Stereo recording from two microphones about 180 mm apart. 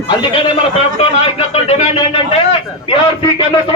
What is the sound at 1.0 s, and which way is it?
Speech, 30° left (ahead or behind).